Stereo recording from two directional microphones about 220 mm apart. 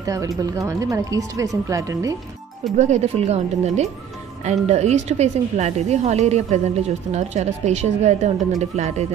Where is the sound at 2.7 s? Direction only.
30° right (ahead or behind).